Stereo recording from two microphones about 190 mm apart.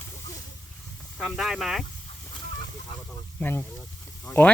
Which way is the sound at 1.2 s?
Centre (ahead or behind).